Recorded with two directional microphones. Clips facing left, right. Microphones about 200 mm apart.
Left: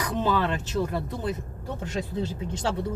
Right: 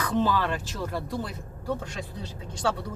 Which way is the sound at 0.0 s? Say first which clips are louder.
Even; 20° left (ahead or behind).